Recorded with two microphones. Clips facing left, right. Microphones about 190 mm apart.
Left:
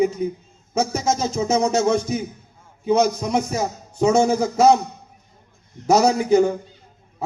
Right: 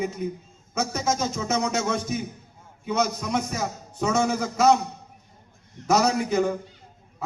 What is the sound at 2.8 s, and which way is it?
Speech, 30° left (ahead or behind).